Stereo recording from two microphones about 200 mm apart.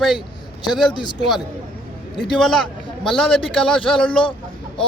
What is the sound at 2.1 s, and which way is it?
A man's voice, centre (ahead or behind).